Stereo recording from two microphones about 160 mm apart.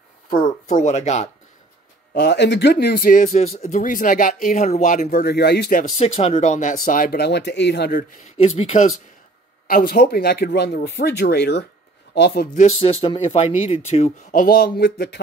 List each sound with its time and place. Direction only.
0.3 s speech: 50° left (ahead or behind)
2.1 s speech: 90° left; by 5.2 s 55° left (ahead or behind)
5.2 s speech: 90° left
5.8 s speech: 50° left (ahead or behind); by 8.0 s 90° left
8.4 s speech: 40° left (ahead or behind)
9.7 s speech: 60° left (ahead or behind); by 12.4 s 90° left
12.5 s speech: 40° left (ahead or behind)
14.3 s speech: 60° left (ahead or behind); by 15.1 s 85° left